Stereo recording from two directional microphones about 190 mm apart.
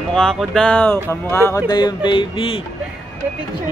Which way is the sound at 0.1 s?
5° left (ahead or behind).